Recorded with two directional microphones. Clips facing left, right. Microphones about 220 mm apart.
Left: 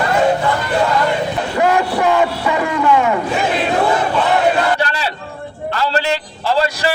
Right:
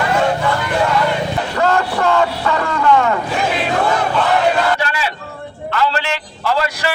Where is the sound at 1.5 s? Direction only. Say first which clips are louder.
Left 2 dB; 15° left (ahead or behind).